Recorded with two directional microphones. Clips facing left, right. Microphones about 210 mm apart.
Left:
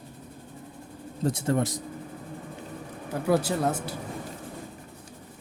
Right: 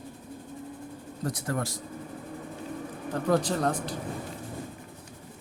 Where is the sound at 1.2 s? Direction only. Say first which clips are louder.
Left 6 dB; 25° left (ahead or behind).